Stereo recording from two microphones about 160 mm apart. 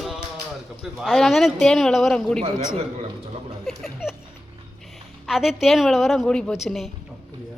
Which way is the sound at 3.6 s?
Centre (ahead or behind).